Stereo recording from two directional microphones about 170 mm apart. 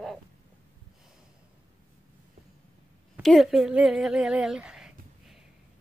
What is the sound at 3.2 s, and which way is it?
Speech, centre (ahead or behind).